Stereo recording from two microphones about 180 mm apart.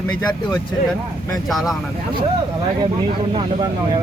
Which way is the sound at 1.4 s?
Centre (ahead or behind).